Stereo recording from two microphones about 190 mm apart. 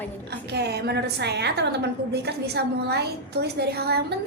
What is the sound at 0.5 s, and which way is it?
A woman's voice, 60° right (ahead or behind).